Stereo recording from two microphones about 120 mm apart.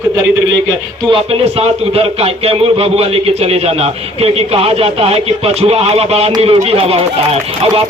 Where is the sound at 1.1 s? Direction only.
55° right (ahead or behind).